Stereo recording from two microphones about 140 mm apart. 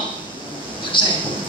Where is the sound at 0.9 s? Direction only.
35° left (ahead or behind).